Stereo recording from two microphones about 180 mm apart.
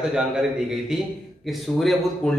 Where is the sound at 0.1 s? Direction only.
5° right (ahead or behind).